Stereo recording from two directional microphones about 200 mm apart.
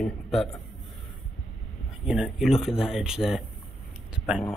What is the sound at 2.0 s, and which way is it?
Speech, 5° right (ahead or behind).